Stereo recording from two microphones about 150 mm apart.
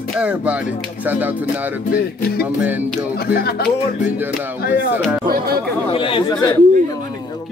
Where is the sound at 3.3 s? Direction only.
90° left.